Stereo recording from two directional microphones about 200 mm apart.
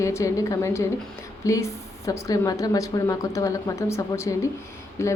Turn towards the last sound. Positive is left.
turn(degrees=15)  # may be behind; listen again after turning